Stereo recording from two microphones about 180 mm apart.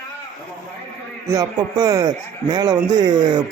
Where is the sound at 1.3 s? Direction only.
20° right (ahead or behind).